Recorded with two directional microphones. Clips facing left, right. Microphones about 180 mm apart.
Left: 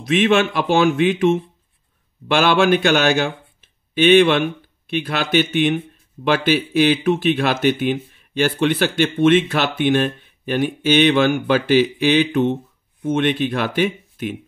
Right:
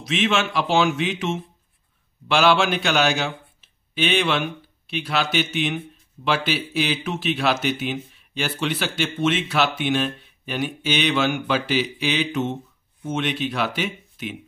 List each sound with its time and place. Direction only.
0.0 s speech: 55° left (ahead or behind)